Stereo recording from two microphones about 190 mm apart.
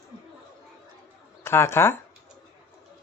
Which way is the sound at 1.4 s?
15° left (ahead or behind).